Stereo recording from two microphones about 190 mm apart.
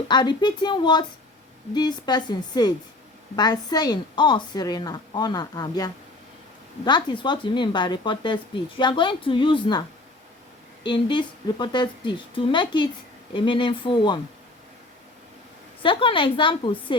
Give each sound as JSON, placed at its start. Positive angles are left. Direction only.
{"t": 0.1, "sound": "speech", "side_deg": 25}
{"t": 10.8, "sound": "speech", "side_deg": 25}
{"t": 15.8, "sound": "speech", "side_deg": 25}